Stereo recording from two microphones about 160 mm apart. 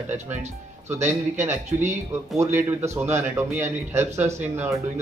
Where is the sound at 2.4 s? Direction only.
15° right (ahead or behind).